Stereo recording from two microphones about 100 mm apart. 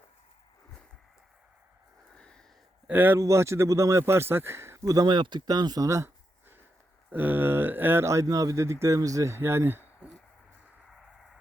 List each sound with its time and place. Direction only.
2.1 s a sound: 10° left (ahead or behind)
2.8 s speech: 20° right (ahead or behind)
3.2 s speech: 30° right (ahead or behind)
5.0 s speech: 50° right (ahead or behind); by 6.1 s 35° right (ahead or behind)
7.1 s speech: 20° right (ahead or behind)